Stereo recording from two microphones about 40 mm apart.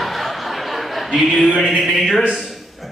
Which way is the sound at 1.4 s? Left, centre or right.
Right.